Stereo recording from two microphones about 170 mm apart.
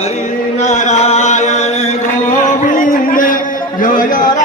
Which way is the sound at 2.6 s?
50° left (ahead or behind).